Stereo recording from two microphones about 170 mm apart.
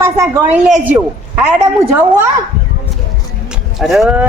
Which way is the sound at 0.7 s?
5° right (ahead or behind).